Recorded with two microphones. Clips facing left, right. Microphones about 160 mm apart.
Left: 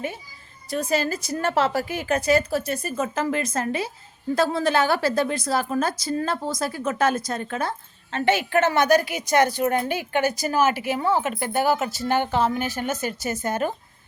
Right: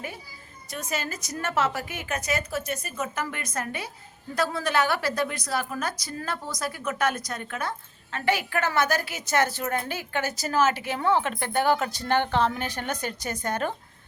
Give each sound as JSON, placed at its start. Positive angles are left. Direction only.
{"t": 0.7, "sound": "a woman's voice", "side_deg": 30}